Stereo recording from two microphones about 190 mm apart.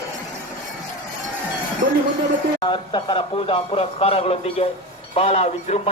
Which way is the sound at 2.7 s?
25° left (ahead or behind).